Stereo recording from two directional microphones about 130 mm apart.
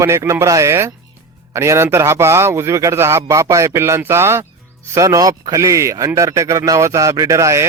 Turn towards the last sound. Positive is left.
turn(degrees=-25)  # may be behind; listen again after turning